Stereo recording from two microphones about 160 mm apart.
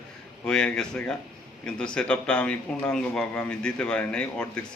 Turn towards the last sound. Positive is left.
turn(degrees=5)  # may be behind; listen again after turning